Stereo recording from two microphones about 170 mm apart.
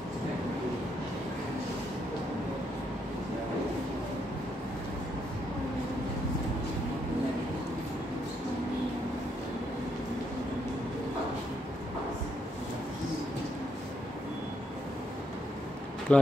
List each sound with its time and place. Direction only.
16.1 s speech: 5° left (ahead or behind)